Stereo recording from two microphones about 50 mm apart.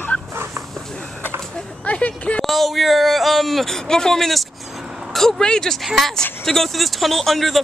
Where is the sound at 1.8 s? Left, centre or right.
Left.